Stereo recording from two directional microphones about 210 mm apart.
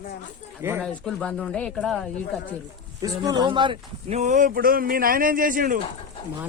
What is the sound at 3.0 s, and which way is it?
Speech, 20° right (ahead or behind).